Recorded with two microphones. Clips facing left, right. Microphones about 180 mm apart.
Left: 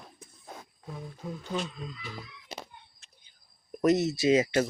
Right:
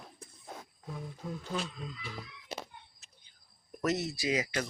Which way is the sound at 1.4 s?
Centre (ahead or behind).